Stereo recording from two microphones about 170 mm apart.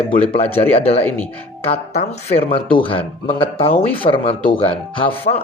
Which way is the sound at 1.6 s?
35° left (ahead or behind).